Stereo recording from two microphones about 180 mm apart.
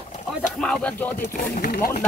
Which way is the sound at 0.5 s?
Centre (ahead or behind).